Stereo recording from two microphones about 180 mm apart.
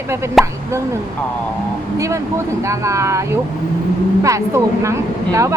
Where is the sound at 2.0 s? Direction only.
15° right (ahead or behind).